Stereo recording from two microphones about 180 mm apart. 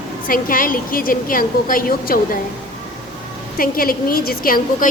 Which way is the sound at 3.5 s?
55° left (ahead or behind).